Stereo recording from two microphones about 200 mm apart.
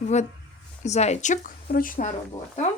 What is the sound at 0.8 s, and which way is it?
Speech, 35° left (ahead or behind).